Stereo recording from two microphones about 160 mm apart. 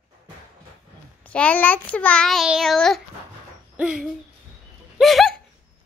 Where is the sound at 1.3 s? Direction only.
10° left (ahead or behind).